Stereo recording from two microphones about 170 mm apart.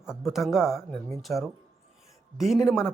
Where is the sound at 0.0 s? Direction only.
5° right (ahead or behind).